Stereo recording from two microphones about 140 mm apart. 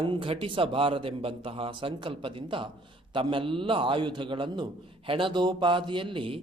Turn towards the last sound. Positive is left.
turn(degrees=-40)  # may be behind; listen again after turning